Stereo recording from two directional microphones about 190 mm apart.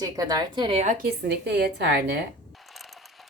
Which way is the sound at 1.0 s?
60° right (ahead or behind).